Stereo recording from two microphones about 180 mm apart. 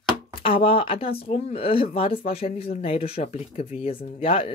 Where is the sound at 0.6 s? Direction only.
30° left (ahead or behind).